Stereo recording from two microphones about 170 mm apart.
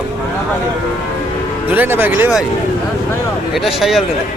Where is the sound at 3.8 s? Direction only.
Centre (ahead or behind).